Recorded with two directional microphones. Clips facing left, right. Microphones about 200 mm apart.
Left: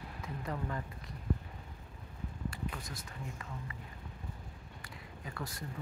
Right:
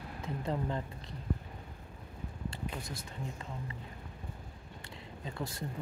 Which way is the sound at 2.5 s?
25° right (ahead or behind).